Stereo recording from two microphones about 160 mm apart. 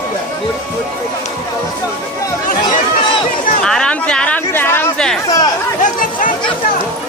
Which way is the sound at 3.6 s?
5° left (ahead or behind).